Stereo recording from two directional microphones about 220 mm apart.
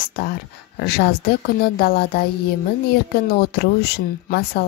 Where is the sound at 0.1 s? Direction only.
45° left (ahead or behind).